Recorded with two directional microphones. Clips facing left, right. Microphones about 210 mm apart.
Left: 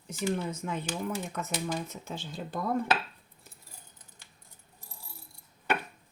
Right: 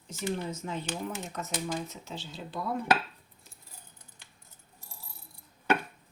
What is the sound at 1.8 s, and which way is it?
Speech, 50° left (ahead or behind).